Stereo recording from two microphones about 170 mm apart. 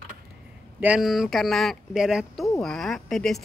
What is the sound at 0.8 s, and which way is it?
Speech, 5° right (ahead or behind).